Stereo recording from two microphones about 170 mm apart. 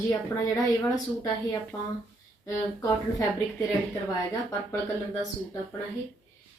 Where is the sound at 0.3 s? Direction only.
20° left (ahead or behind).